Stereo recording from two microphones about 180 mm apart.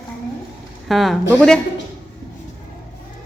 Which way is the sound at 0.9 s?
Centre (ahead or behind).